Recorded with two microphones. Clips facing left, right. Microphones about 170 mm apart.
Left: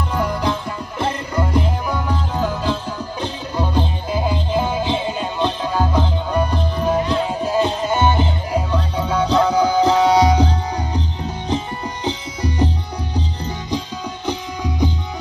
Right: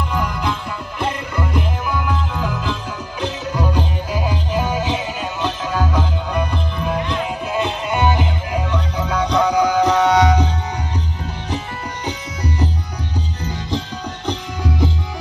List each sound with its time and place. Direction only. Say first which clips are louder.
0.1 s music: left 5 dB; 35° left (ahead or behind)
12.0 s music: left 3 dB; 30° left (ahead or behind)
13.7 s music: even; 10° left (ahead or behind)